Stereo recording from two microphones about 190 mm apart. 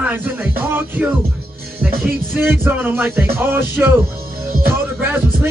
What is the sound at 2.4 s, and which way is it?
Speech, 10° right (ahead or behind).